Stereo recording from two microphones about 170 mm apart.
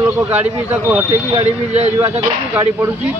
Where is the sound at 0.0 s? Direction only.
15° right (ahead or behind).